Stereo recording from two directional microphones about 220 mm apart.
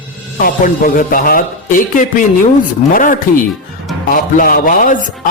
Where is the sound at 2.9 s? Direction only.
40° left (ahead or behind).